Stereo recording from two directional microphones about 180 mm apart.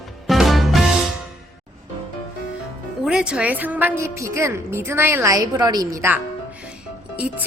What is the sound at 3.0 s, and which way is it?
A woman's voice, 5° right (ahead or behind).